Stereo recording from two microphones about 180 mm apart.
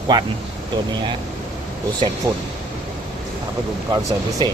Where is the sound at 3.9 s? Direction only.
25° right (ahead or behind).